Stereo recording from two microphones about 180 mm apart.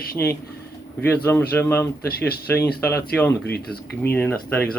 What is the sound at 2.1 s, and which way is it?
Speech, 60° left (ahead or behind).